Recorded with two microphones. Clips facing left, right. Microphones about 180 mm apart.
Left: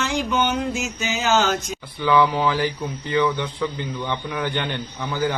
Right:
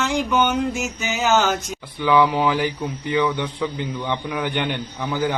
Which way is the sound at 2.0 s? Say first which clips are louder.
Right 1 dB; 15° right (ahead or behind).